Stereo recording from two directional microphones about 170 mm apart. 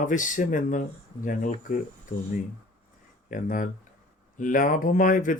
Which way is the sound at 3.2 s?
50° left (ahead or behind).